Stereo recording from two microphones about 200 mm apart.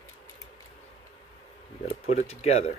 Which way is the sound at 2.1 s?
30° left (ahead or behind).